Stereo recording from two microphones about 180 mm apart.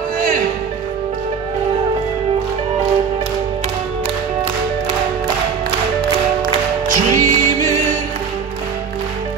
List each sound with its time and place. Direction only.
6.9 s music: 40° right (ahead or behind)